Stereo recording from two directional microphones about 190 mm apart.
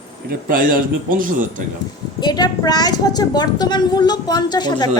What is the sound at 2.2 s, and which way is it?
A woman's voice, 20° left (ahead or behind).